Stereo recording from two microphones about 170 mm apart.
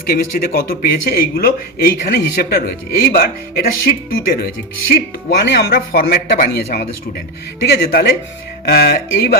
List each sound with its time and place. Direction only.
0.0 s speech: 60° left (ahead or behind)